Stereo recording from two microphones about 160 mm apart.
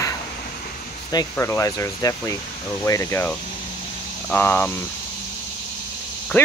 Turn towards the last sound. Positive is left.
turn(degrees=10)  # may be behind; listen again after turning